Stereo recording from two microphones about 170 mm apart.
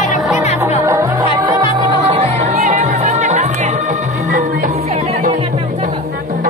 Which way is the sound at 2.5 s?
50° right (ahead or behind).